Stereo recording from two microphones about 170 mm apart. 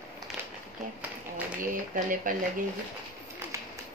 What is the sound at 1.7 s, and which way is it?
Speech, 50° right (ahead or behind).